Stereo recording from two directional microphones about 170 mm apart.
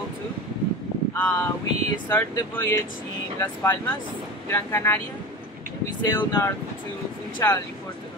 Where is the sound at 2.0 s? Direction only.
10° left (ahead or behind).